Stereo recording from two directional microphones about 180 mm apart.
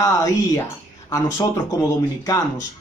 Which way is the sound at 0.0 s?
20° left (ahead or behind).